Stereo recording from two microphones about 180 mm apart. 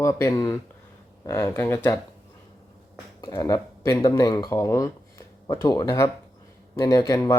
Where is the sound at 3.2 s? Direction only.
20° left (ahead or behind).